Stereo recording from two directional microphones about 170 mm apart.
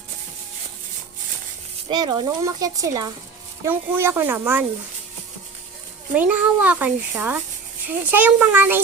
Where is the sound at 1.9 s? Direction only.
25° right (ahead or behind).